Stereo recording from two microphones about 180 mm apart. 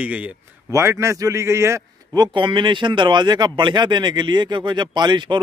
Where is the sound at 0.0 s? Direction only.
5° right (ahead or behind).